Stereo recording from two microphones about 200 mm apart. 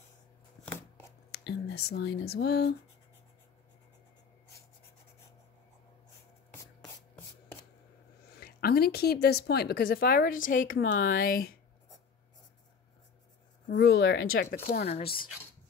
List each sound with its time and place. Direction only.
0.7 s a sound: 5° left (ahead or behind)
1.3 s speech: 55° left (ahead or behind)
8.4 s speech: 50° left (ahead or behind)
13.7 s speech: 65° left (ahead or behind)